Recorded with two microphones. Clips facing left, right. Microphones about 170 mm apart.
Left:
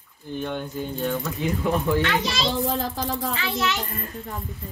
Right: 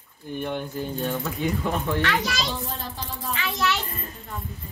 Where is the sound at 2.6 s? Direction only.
90° left.